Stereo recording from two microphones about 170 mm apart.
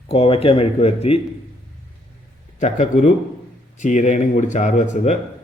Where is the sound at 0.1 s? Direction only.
35° left (ahead or behind).